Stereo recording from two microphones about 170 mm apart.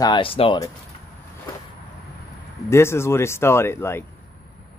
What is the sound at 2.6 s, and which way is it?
Speech, 15° left (ahead or behind).